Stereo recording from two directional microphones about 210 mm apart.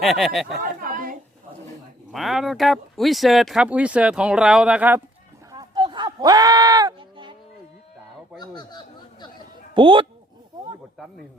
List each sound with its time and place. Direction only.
0.0 s speech: centre (ahead or behind)
0.5 s chatter: 40° right (ahead or behind)
2.1 s speech: centre (ahead or behind)
5.5 s bleat: 20° right (ahead or behind)
8.4 s speech: 20° left (ahead or behind)
9.7 s speech: 25° right (ahead or behind)